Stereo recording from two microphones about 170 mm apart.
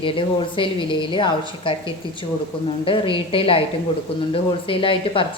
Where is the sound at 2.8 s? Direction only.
30° left (ahead or behind).